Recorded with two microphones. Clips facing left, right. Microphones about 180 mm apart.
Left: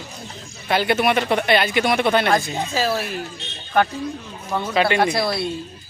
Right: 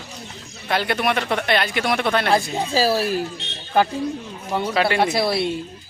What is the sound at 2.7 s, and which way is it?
Speech, 35° right (ahead or behind).